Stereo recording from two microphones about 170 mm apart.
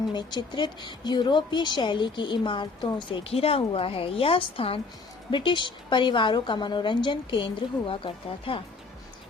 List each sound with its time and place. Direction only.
0.1 s a woman's voice: 25° left (ahead or behind)